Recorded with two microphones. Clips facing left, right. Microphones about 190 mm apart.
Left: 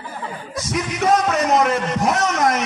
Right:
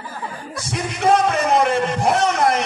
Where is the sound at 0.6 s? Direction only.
30° right (ahead or behind).